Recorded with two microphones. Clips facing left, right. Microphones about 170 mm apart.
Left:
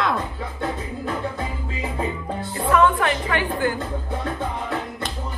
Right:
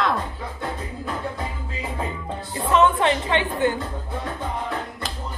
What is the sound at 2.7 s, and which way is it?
A woman's voice, 25° right (ahead or behind).